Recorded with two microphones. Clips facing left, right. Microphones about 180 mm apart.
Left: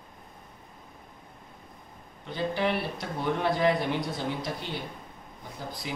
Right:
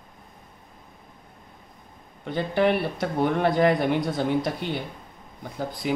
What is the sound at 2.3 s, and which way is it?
A man's voice, 55° right (ahead or behind).